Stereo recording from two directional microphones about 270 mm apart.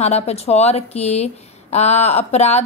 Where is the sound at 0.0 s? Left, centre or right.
Left.